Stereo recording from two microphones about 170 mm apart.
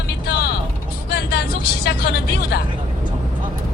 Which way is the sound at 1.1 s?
70° left (ahead or behind).